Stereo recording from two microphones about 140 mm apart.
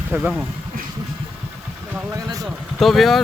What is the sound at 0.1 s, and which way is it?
Speech, 5° right (ahead or behind).